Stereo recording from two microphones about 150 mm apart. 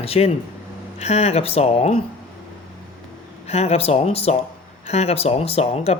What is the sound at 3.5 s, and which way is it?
Speech, 45° left (ahead or behind).